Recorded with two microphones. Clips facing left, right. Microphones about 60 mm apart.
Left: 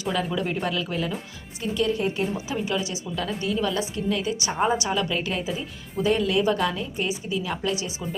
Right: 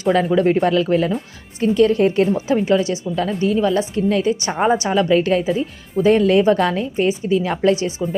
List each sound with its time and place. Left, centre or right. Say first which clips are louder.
0.0 s a woman's voice: right 11 dB; right
2.5 s a woman's voice: right 11 dB; right